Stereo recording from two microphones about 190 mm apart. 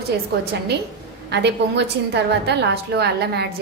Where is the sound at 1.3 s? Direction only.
65° right (ahead or behind).